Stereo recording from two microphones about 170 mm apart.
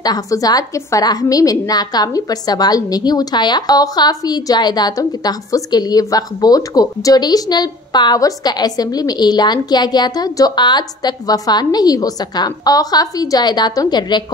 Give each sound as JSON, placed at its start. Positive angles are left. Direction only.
{"t": 0.0, "sound": "a woman's voice", "side_deg": 20}